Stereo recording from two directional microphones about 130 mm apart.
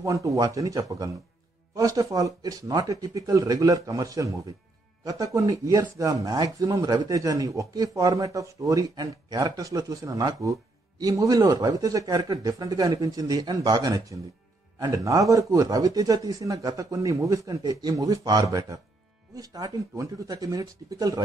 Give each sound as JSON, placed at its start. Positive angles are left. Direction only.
{"t": 0.0, "sound": "speech", "side_deg": -25}